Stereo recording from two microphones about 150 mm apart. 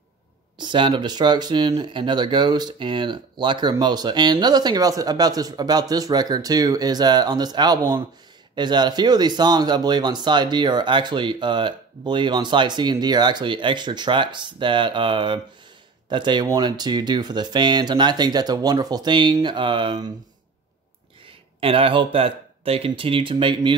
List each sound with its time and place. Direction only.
0.6 s speech: 30° right (ahead or behind)
21.5 s speech: 40° right (ahead or behind)